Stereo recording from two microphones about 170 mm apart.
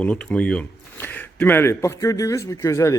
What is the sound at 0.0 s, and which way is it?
A man's voice, 5° left (ahead or behind).